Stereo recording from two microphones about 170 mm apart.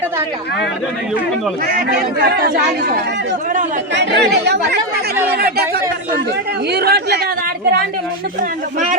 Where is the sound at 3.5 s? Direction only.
45° right (ahead or behind).